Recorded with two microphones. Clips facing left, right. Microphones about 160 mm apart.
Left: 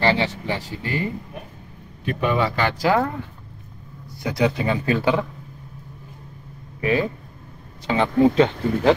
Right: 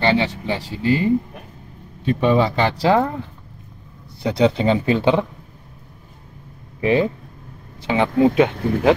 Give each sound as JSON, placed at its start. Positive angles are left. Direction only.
{"t": 0.0, "sound": "speech", "side_deg": -25}
{"t": 4.2, "sound": "speech", "side_deg": -25}
{"t": 6.8, "sound": "speech", "side_deg": -25}